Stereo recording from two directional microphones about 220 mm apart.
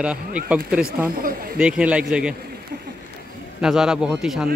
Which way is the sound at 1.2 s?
40° right (ahead or behind).